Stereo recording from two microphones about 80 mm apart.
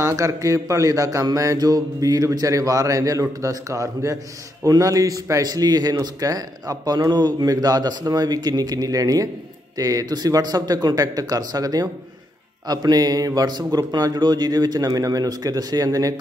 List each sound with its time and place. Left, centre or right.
0.0 s a man's voice: right